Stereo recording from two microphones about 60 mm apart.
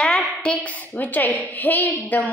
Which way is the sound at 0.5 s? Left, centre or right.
Left.